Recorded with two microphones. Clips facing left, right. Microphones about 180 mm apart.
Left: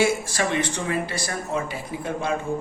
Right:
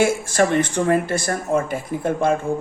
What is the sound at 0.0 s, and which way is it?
Speech, 50° right (ahead or behind).